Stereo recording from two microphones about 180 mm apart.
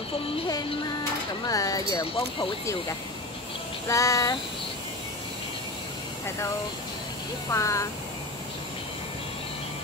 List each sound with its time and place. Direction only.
0.5 s speech: 20° left (ahead or behind)
3.8 s child singing: 15° left (ahead or behind)
7.5 s child singing: 15° left (ahead or behind)